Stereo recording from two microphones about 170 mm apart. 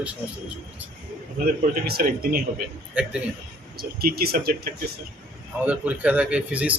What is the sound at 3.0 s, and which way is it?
Speech, 10° right (ahead or behind).